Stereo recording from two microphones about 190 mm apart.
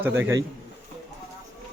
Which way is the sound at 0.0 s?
15° right (ahead or behind).